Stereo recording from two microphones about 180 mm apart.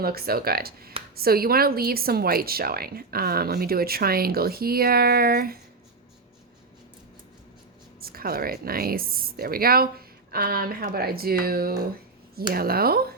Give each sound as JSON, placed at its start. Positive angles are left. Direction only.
{"t": 0.0, "sound": "a woman's voice", "side_deg": -55}
{"t": 8.0, "sound": "a woman's voice", "side_deg": -55}